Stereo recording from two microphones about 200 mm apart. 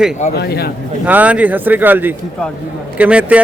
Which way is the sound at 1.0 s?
5° right (ahead or behind).